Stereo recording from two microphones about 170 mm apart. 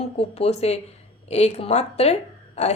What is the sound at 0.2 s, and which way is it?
A woman's voice, 40° left (ahead or behind).